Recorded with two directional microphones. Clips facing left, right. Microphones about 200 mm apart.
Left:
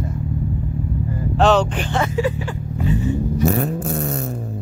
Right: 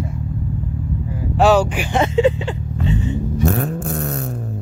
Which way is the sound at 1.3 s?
10° right (ahead or behind).